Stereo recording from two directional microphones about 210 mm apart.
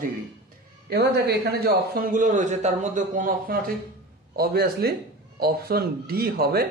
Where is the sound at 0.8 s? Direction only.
50° right (ahead or behind).